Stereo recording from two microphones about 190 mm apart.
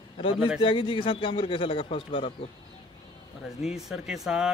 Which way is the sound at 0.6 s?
30° left (ahead or behind).